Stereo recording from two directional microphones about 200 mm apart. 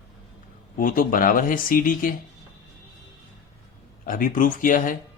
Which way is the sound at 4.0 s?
40° left (ahead or behind).